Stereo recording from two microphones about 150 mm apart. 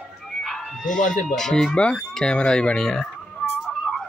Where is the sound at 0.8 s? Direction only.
60° left (ahead or behind).